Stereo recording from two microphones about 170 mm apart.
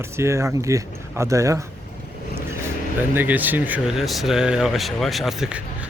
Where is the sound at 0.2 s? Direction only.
15° right (ahead or behind).